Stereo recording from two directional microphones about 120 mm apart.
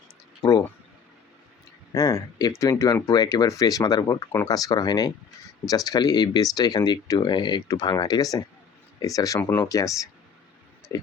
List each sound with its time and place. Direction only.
1.9 s speech: 30° left (ahead or behind)
9.4 s speech: 15° left (ahead or behind)
9.6 s speech: 30° left (ahead or behind)